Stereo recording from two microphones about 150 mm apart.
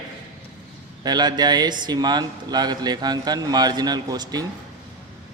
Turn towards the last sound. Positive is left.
turn(degrees=-25)  # may be behind; listen again after turning